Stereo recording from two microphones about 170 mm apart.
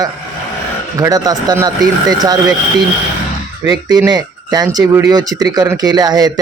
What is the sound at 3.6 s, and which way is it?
Speech, 25° right (ahead or behind).